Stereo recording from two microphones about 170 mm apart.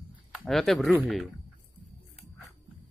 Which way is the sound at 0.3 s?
Centre (ahead or behind).